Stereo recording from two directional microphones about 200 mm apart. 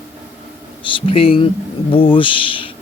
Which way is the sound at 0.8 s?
25° left (ahead or behind).